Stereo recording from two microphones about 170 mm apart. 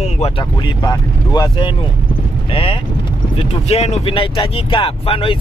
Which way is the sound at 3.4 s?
35° left (ahead or behind).